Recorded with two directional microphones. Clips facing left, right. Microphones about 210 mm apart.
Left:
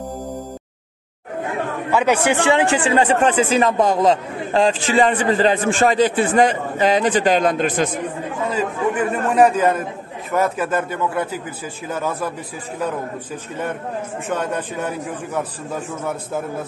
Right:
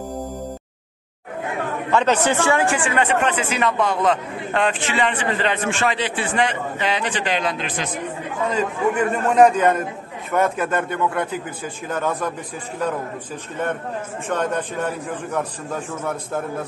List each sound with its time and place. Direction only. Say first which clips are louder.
1.9 s speech: left 1 dB; 10° left (ahead or behind)
2.8 s a man's voice: left 4 dB; 30° left (ahead or behind); by 7.9 s 45° left (ahead or behind)
9.1 s a man's voice: right 1 dB; 5° left (ahead or behind)
14.3 s a man's voice: right 1 dB; 10° left (ahead or behind)